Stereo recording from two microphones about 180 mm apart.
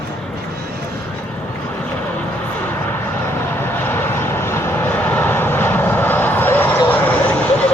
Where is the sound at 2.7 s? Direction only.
10° left (ahead or behind).